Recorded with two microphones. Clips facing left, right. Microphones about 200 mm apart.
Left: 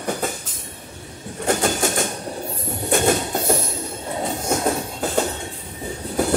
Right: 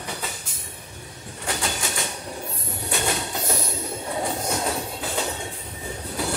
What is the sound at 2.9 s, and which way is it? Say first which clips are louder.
Train: left 8 dB; 50° left (ahead or behind).